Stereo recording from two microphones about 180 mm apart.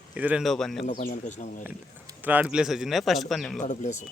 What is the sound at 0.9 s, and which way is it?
Speech, 45° left (ahead or behind).